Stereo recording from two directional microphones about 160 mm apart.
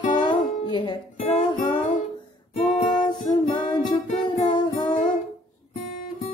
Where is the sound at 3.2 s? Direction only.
30° left (ahead or behind).